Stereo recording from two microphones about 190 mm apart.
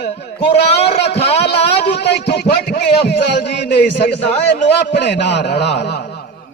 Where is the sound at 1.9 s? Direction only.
60° left (ahead or behind).